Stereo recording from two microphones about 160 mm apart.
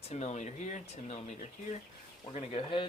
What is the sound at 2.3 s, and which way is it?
Speech, 35° left (ahead or behind).